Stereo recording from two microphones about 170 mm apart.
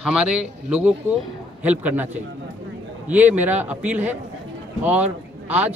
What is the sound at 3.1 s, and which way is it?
A man's voice, 10° right (ahead or behind).